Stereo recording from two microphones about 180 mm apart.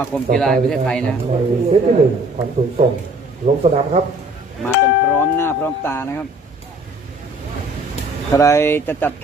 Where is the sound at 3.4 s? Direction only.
50° right (ahead or behind).